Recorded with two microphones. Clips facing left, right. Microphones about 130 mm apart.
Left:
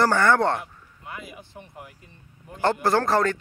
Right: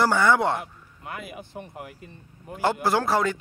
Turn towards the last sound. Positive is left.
turn(degrees=-10)  # may be behind; listen again after turning